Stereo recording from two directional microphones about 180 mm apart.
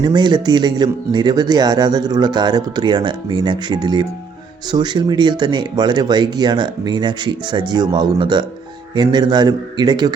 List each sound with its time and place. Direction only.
0.0 s speech: 25° right (ahead or behind)